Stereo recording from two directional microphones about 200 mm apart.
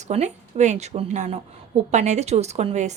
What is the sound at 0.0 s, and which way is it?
A woman's voice, 35° right (ahead or behind).